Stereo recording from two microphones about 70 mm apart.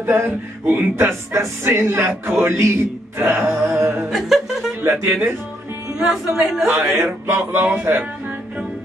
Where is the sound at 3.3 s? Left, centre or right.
Right.